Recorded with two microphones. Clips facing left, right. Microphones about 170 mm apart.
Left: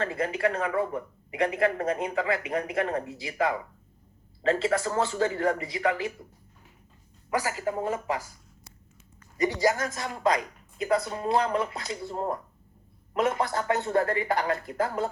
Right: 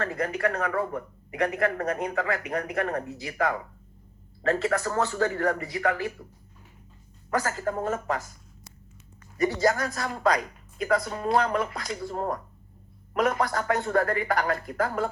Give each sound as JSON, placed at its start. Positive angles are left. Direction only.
{"t": 0.0, "sound": "speech", "side_deg": 25}
{"t": 7.3, "sound": "speech", "side_deg": 15}
{"t": 9.4, "sound": "speech", "side_deg": 15}